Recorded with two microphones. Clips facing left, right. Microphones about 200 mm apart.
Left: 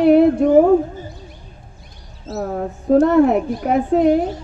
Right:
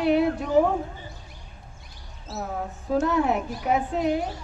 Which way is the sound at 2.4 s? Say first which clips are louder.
Left 8 dB; 55° left (ahead or behind).